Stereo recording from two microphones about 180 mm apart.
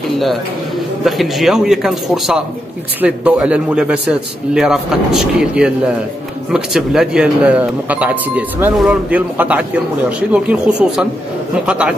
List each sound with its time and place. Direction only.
1.0 s a man's voice: centre (ahead or behind)